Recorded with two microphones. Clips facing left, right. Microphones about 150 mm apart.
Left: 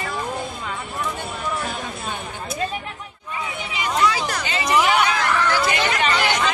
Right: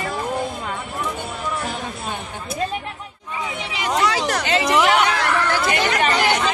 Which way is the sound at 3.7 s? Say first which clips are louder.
Even; 85° right.